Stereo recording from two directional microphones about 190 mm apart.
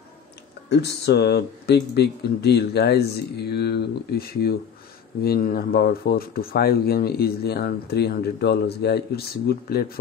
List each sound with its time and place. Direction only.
0.7 s speech: 60° left (ahead or behind)